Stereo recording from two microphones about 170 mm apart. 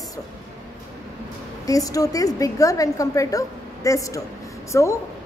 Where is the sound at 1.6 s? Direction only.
20° left (ahead or behind).